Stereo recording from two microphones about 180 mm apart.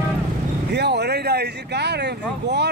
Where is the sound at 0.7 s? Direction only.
70° right (ahead or behind).